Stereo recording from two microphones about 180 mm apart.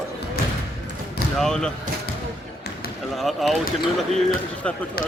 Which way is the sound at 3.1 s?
Centre (ahead or behind).